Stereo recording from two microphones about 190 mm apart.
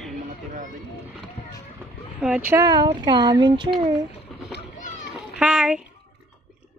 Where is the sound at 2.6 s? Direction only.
20° right (ahead or behind).